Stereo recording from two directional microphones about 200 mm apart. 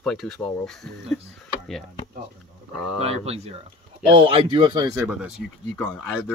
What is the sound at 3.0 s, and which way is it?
Speech, 30° right (ahead or behind).